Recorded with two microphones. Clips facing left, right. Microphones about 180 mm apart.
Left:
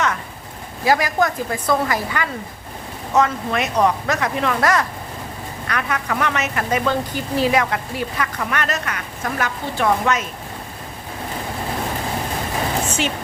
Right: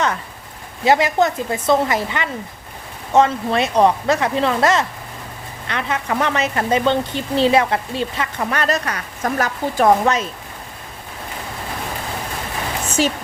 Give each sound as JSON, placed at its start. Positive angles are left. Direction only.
{"t": 0.9, "sound": "a woman's voice", "side_deg": -25}
{"t": 13.0, "sound": "a woman's voice", "side_deg": -40}